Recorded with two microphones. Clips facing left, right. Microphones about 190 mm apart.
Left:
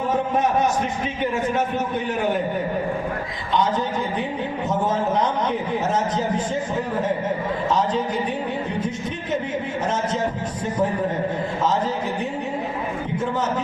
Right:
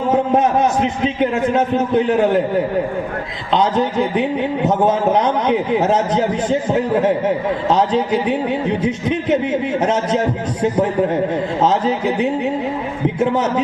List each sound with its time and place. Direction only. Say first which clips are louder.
0.8 s a man's voice: right 7 dB; 90° right
3.5 s a man's voice: right 6 dB; 80° right